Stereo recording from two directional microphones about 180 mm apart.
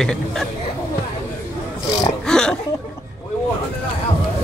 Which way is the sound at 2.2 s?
5° left (ahead or behind).